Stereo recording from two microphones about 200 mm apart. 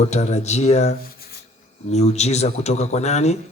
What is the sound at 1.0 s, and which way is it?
Rub, 50° left (ahead or behind).